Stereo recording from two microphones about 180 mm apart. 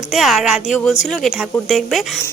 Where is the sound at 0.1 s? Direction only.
Centre (ahead or behind).